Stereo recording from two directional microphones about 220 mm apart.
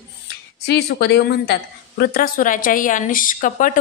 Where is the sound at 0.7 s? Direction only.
45° left (ahead or behind).